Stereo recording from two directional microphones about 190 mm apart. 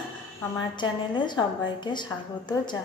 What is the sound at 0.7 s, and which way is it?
A woman's voice, 25° left (ahead or behind).